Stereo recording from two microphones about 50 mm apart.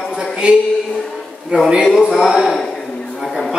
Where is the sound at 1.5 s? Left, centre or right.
Centre.